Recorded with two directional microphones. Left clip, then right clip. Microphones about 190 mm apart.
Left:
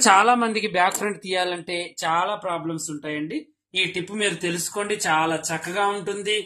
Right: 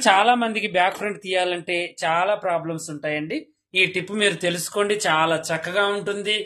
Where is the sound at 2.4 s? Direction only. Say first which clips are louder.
Right 3 dB; 30° right (ahead or behind).